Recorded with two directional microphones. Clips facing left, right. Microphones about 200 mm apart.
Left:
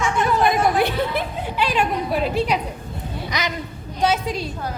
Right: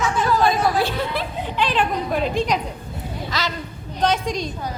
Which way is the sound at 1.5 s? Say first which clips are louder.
Even; 10° left (ahead or behind).